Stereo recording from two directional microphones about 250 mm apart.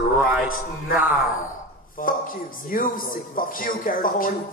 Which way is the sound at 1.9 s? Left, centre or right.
Left.